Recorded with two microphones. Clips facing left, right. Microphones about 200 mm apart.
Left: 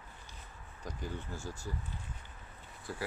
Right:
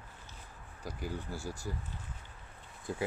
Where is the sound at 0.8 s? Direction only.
10° right (ahead or behind).